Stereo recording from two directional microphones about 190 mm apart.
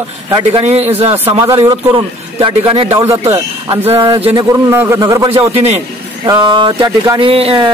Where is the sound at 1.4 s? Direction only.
20° right (ahead or behind).